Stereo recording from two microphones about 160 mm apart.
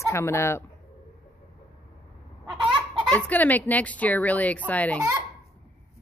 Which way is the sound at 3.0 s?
10° left (ahead or behind).